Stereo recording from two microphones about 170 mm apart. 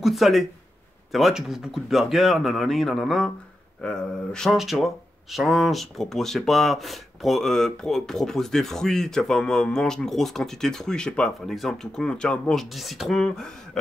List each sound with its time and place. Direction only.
0.0 s speech: centre (ahead or behind)